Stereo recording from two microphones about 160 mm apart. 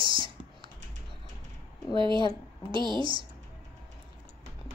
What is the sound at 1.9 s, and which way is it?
Speech, 30° right (ahead or behind).